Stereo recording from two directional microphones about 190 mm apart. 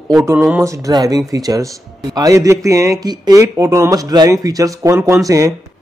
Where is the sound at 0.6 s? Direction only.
15° right (ahead or behind).